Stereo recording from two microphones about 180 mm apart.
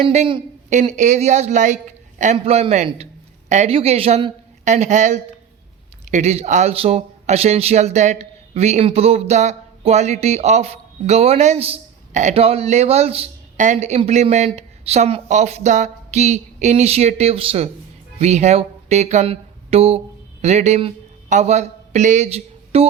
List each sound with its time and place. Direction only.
0.1 s a man's voice: 35° right (ahead or behind)